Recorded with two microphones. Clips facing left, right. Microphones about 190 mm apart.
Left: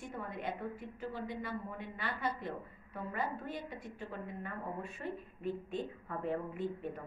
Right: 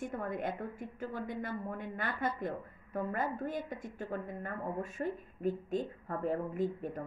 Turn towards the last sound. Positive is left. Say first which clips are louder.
# right 4 dB
turn(degrees=-40)  # may be behind; listen again after turning